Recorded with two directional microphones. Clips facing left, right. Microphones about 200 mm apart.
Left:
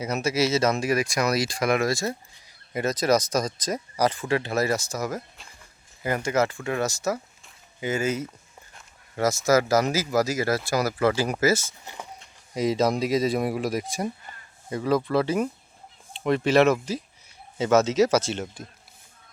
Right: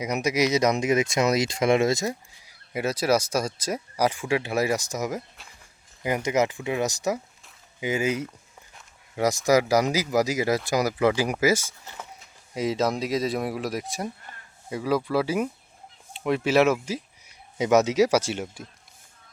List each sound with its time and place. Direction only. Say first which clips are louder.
0.0 s speech: even; 15° right (ahead or behind)
2.5 s speech: left 1 dB; 10° right (ahead or behind)
8.7 s a sound: even; 15° right (ahead or behind)
9.5 s speech: even; 15° right (ahead or behind)
12.2 s speech: left 2 dB; centre (ahead or behind)